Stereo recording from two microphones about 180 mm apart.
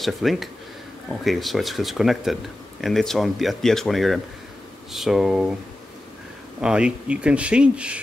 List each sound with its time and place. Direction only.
0.0 s speech: centre (ahead or behind)
6.6 s speech: 5° right (ahead or behind)